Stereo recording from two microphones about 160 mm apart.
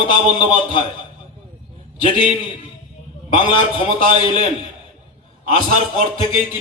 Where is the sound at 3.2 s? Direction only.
30° left (ahead or behind).